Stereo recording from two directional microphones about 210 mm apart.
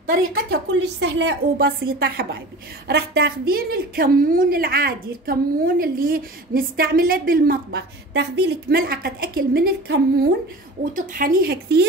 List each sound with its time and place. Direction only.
0.0 s a woman's voice: 50° right (ahead or behind)
10.9 s a woman's voice: 40° right (ahead or behind)